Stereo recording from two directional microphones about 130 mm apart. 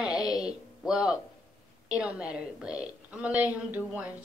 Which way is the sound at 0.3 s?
30° left (ahead or behind).